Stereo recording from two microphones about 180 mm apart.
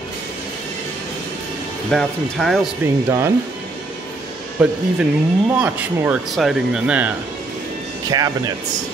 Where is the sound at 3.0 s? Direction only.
15° right (ahead or behind).